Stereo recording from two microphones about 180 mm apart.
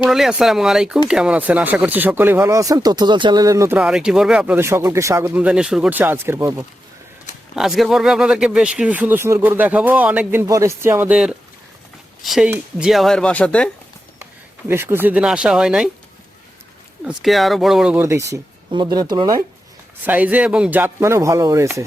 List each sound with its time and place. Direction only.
0.0 s speech: centre (ahead or behind)
7.5 s speech: centre (ahead or behind)
14.7 s speech: 10° right (ahead or behind)
17.0 s speech: centre (ahead or behind)
18.0 s speech: 15° right (ahead or behind)
20.1 s speech: 10° right (ahead or behind)